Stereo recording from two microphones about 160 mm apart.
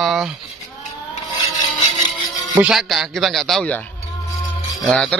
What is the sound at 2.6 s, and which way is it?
A man's voice, centre (ahead or behind).